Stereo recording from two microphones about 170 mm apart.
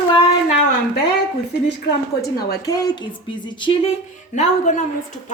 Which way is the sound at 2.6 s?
20° left (ahead or behind).